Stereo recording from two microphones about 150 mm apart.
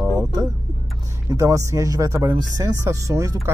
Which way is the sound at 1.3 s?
20° right (ahead or behind).